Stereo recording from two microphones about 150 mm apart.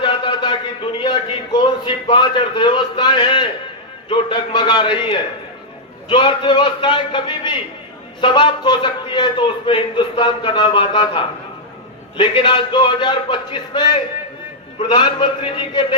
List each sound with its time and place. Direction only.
0.0 s a man's voice: 35° left (ahead or behind)